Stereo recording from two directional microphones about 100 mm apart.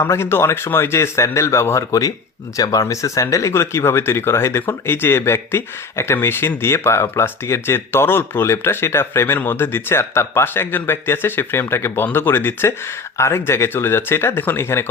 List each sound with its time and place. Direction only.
0.0 s speech: 25° left (ahead or behind)